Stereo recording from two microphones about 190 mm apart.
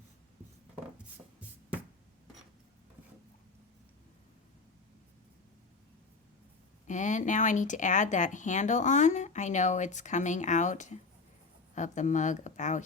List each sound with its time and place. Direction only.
6.8 s speech: 40° left (ahead or behind)